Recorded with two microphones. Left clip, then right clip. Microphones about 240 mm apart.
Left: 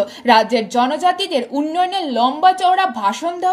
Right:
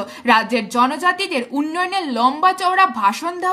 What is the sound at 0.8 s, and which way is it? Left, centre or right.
Speech, centre.